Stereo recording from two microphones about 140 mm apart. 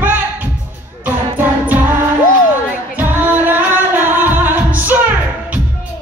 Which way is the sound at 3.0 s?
15° right (ahead or behind).